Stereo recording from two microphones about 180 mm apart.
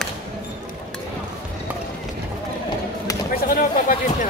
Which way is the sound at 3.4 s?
50° left (ahead or behind).